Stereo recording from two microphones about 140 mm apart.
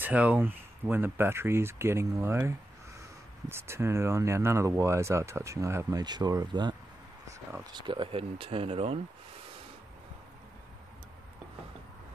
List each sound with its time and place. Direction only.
0.0 s speech: 10° right (ahead or behind); by 9.0 s 45° right (ahead or behind)